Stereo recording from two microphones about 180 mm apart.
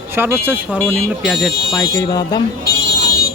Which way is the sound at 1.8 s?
20° left (ahead or behind).